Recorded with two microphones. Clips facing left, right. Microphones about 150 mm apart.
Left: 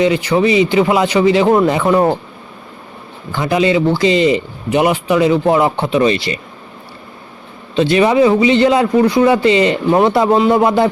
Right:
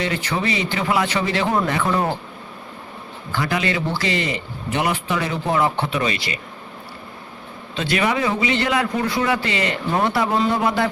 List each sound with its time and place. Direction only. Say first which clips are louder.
0.0 s a man's voice: left 10 dB; 15° left (ahead or behind)
3.3 s a man's voice: left 9 dB; 20° left (ahead or behind)
7.8 s a man's voice: left 10 dB; 25° left (ahead or behind)